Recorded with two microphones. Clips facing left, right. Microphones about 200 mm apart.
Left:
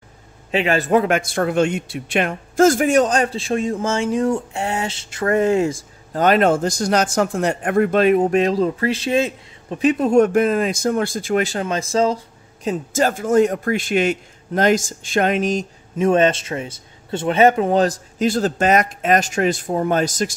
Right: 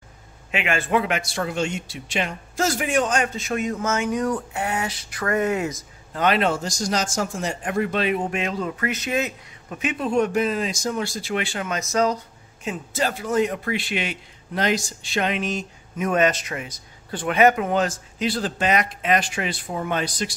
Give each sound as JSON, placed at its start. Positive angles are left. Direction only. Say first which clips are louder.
{"t": 0.5, "sound": "a man's voice", "louder": "left 6 dB", "side_deg": 35}
{"t": 6.1, "sound": "speech", "louder": "left 6 dB", "side_deg": 45}
{"t": 12.6, "sound": "speech", "louder": "left 6 dB", "side_deg": 45}
{"t": 16.0, "sound": "a man's voice", "louder": "left 5 dB", "side_deg": 30}